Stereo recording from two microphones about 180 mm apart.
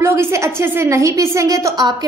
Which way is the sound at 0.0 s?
15° right (ahead or behind).